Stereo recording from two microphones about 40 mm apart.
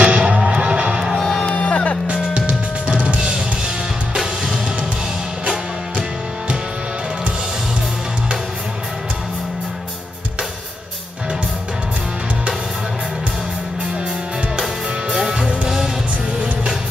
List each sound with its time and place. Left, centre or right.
0.0 s music: right
1.5 s music: left
2.0 s music: right
14.6 s music: centre